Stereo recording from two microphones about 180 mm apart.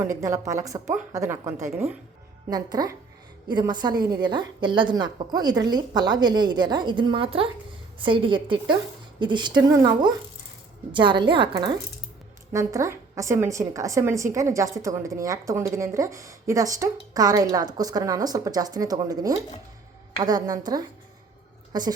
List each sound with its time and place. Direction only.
0.2 s a woman's voice: 15° right (ahead or behind)
2.5 s a woman's voice: 20° right (ahead or behind)